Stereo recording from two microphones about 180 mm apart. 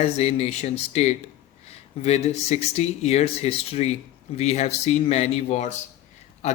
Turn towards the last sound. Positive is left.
turn(degrees=40)  # may be behind; listen again after turning